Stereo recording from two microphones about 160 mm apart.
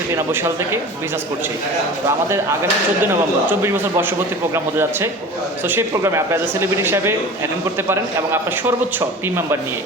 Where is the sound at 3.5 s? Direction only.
15° right (ahead or behind).